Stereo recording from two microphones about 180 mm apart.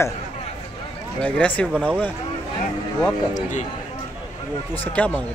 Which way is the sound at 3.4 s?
45° left (ahead or behind).